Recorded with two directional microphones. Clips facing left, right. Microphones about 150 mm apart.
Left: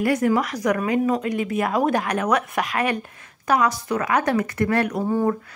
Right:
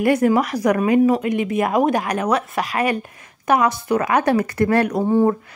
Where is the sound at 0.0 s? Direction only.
25° right (ahead or behind).